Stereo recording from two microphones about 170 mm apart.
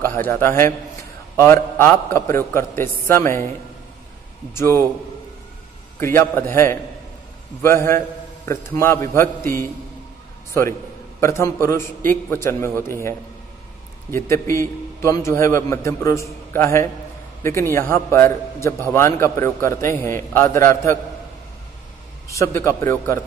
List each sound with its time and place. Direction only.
0.0 s a man's voice: 10° left (ahead or behind)
4.6 s a man's voice: 15° left (ahead or behind)
5.9 s a man's voice: 15° left (ahead or behind)
11.1 s a man's voice: 15° left (ahead or behind)
14.1 s a man's voice: 15° left (ahead or behind)
22.3 s a man's voice: 15° left (ahead or behind)